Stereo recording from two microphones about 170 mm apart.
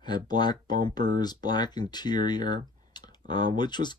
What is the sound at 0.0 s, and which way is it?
Speech, 25° left (ahead or behind).